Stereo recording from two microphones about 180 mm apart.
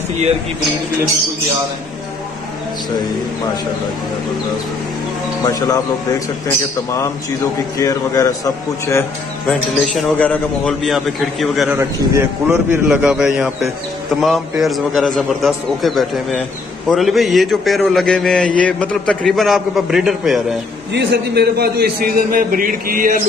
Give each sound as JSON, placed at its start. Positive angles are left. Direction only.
{"t": 5.4, "sound": "a man's voice", "side_deg": 20}
{"t": 9.5, "sound": "a man's voice", "side_deg": 5}
{"t": 11.8, "sound": "a man's voice", "side_deg": -15}
{"t": 20.9, "sound": "a man's voice", "side_deg": -70}